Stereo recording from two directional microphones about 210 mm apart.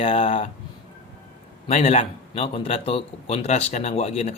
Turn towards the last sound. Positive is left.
turn(degrees=30)  # may be behind; listen again after turning